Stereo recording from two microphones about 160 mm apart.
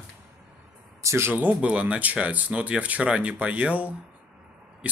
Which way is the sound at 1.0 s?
15° right (ahead or behind).